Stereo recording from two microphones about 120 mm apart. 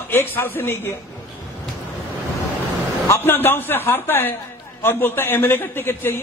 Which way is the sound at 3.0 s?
20° left (ahead or behind).